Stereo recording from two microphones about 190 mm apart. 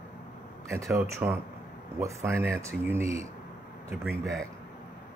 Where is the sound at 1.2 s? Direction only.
20° right (ahead or behind).